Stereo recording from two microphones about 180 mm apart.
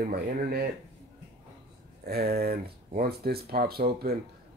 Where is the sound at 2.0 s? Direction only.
60° right (ahead or behind).